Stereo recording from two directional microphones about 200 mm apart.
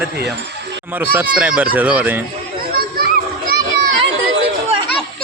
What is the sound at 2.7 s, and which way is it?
Children playing, 50° right (ahead or behind).